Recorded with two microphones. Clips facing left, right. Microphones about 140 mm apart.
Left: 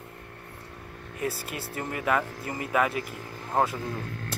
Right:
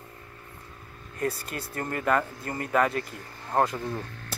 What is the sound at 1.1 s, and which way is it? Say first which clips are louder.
Mantra: right 2 dB; 5° left (ahead or behind).